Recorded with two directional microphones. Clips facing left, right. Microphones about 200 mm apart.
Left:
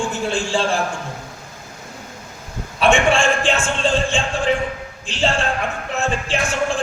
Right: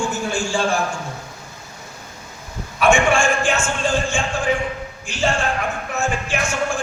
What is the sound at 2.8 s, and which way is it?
Speech, 30° left (ahead or behind).